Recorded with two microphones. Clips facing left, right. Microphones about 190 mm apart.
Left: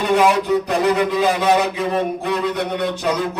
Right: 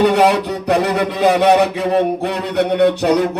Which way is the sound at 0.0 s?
65° right (ahead or behind).